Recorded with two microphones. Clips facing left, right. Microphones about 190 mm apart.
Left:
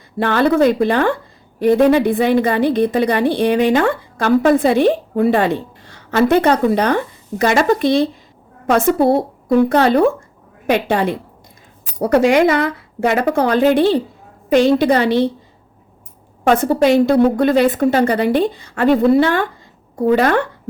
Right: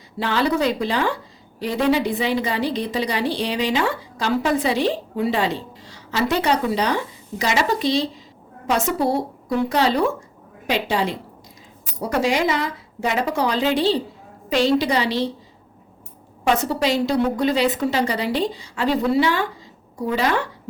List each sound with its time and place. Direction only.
0.2 s a woman's voice: 55° left (ahead or behind)
16.4 s a woman's voice: 50° left (ahead or behind)